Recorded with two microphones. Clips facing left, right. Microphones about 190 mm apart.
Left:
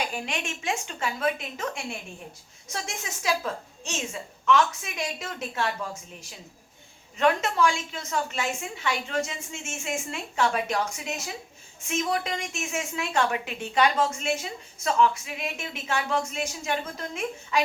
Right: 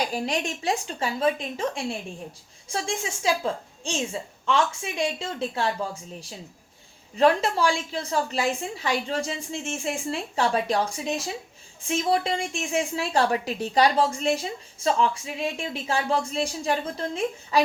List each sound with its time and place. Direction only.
0.0 s a woman's voice: 35° right (ahead or behind)